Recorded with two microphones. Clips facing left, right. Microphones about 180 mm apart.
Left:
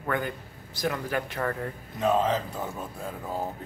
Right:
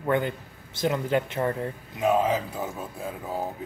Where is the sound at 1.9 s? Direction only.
10° right (ahead or behind).